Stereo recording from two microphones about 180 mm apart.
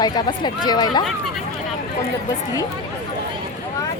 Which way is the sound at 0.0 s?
25° left (ahead or behind).